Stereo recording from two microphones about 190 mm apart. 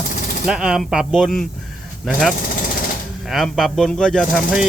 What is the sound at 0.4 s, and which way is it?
Speech, 5° right (ahead or behind).